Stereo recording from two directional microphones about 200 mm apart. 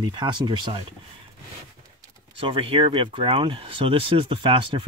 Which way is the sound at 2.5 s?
25° right (ahead or behind).